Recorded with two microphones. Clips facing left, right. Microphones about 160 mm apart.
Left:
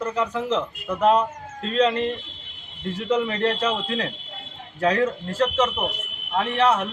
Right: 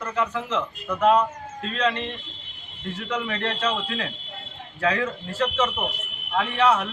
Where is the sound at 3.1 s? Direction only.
25° left (ahead or behind).